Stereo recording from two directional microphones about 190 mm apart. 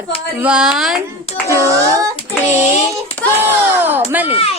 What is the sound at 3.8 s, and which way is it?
Child singing, 10° right (ahead or behind).